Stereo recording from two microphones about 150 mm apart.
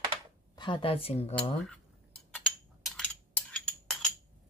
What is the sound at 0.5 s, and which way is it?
Speech, 30° left (ahead or behind).